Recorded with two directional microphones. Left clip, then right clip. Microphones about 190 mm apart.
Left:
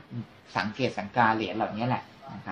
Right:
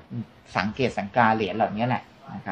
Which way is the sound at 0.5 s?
60° right (ahead or behind).